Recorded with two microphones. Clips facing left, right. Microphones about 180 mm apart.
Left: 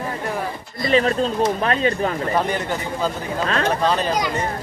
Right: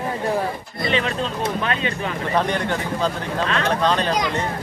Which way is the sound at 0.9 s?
40° left (ahead or behind).